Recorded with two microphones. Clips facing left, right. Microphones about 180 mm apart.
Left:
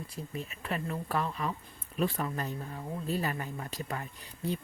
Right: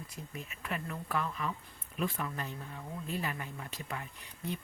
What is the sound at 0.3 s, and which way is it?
Speech, 35° left (ahead or behind).